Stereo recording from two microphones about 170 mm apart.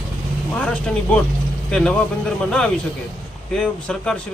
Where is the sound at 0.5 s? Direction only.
5° left (ahead or behind).